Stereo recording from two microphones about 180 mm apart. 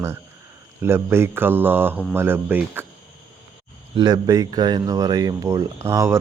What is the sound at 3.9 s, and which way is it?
Speech, 25° right (ahead or behind).